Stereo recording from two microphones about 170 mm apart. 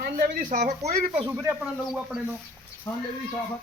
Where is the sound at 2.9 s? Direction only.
15° left (ahead or behind).